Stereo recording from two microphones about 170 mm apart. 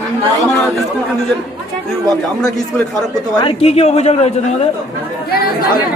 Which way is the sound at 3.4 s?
35° left (ahead or behind).